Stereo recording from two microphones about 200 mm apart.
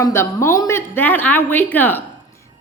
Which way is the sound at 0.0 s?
15° left (ahead or behind).